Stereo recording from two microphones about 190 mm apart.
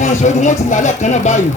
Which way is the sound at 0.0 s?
40° left (ahead or behind).